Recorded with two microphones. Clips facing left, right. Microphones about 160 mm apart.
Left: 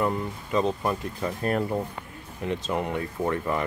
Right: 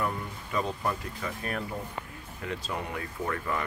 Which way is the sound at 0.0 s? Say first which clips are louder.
Left 6 dB; 25° left (ahead or behind).